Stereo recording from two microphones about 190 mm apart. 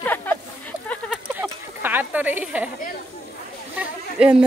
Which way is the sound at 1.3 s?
10° right (ahead or behind).